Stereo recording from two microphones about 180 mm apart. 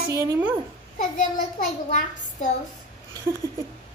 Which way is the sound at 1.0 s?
45° left (ahead or behind).